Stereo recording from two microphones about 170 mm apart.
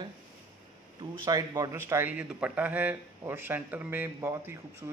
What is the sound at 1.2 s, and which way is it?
Speech, 25° right (ahead or behind).